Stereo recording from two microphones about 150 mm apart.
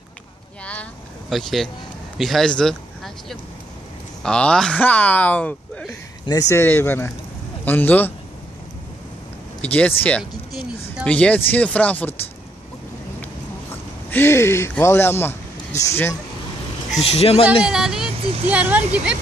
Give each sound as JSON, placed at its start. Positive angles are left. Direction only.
{"t": 1.3, "sound": "speech", "side_deg": 0}
{"t": 6.2, "sound": "speech", "side_deg": 20}
{"t": 9.6, "sound": "speech", "side_deg": 10}
{"t": 14.1, "sound": "speech", "side_deg": 15}
{"t": 17.0, "sound": "speech", "side_deg": 40}
{"t": 17.6, "sound": "speech", "side_deg": -5}